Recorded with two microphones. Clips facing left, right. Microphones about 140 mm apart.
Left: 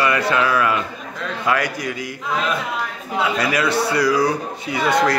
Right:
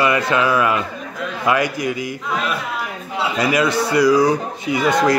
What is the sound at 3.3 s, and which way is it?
A man's voice, 20° right (ahead or behind).